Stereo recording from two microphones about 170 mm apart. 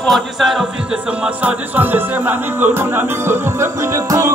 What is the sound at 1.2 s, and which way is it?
Speech, 10° right (ahead or behind).